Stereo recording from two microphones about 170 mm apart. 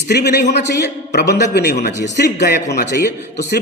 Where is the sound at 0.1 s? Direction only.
70° left (ahead or behind).